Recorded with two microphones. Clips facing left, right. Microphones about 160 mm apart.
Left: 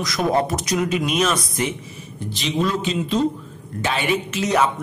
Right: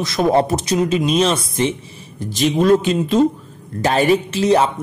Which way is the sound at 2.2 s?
45° right (ahead or behind).